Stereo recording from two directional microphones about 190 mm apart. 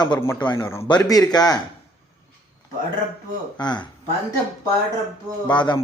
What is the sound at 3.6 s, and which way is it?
Speech, 20° left (ahead or behind).